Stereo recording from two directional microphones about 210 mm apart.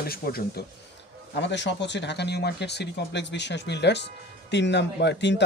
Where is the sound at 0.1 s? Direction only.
45° left (ahead or behind).